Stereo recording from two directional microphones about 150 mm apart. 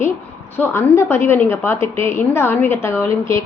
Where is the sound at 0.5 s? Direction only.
15° left (ahead or behind).